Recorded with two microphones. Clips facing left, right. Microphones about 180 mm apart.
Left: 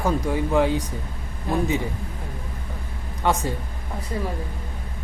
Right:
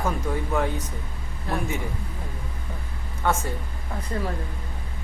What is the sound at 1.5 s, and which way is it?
Speech, 15° left (ahead or behind).